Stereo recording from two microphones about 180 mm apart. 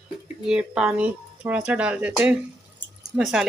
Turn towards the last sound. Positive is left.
turn(degrees=-5)  # may be behind; listen again after turning